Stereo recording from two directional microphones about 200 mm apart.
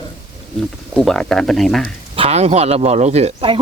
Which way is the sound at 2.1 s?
30° right (ahead or behind).